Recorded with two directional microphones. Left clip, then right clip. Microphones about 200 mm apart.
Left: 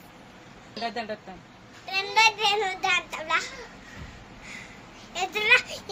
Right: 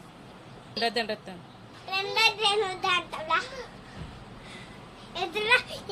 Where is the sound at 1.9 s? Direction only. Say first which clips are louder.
Left 3 dB; 5° right (ahead or behind).